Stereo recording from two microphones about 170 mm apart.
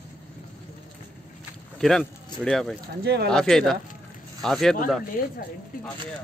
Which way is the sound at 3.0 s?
80° right.